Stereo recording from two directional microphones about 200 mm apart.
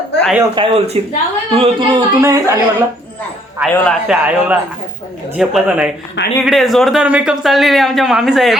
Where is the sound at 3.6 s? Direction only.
5° right (ahead or behind).